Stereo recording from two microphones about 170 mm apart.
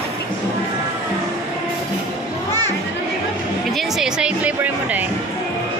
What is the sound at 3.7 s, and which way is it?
Music, centre (ahead or behind).